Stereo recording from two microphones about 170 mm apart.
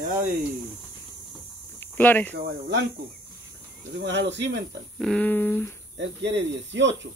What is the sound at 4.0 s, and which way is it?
Speech, 90° right.